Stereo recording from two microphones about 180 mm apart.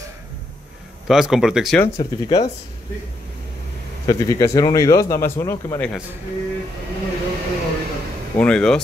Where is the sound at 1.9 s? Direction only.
20° left (ahead or behind).